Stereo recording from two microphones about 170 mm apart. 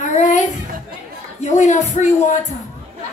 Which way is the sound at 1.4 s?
45° left (ahead or behind).